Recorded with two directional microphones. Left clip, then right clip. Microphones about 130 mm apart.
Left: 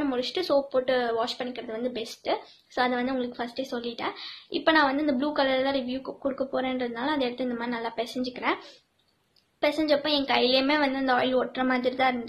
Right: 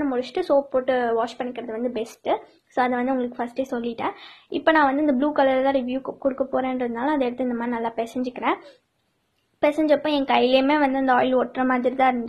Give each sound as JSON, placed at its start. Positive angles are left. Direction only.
{"t": 0.0, "sound": "a woman's voice", "side_deg": -35}
{"t": 9.8, "sound": "a woman's voice", "side_deg": -40}